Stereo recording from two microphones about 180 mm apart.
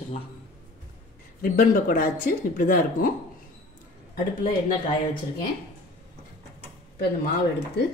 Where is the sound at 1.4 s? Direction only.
55° left (ahead or behind).